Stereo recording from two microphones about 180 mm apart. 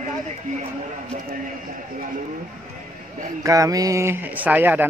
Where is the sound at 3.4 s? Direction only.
20° right (ahead or behind).